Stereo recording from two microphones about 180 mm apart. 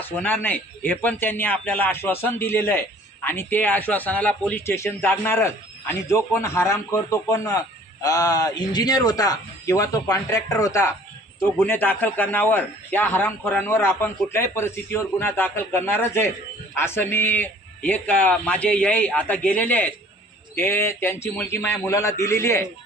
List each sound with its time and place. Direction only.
0.4 s a man's voice: 10° left (ahead or behind)